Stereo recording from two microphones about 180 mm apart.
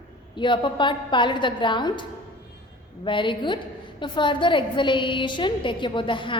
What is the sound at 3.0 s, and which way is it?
A woman's voice, 25° left (ahead or behind).